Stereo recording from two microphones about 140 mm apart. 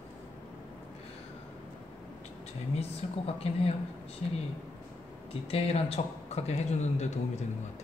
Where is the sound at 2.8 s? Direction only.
45° left (ahead or behind).